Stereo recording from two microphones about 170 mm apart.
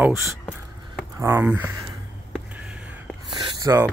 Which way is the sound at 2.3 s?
5° right (ahead or behind).